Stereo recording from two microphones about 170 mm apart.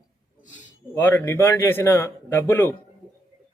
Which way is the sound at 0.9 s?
15° left (ahead or behind).